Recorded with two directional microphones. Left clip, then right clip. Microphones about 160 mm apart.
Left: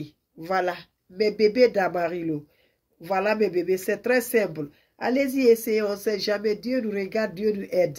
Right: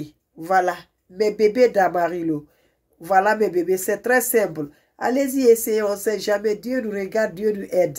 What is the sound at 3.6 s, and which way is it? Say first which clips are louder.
Speech: right 3 dB; 15° left (ahead or behind).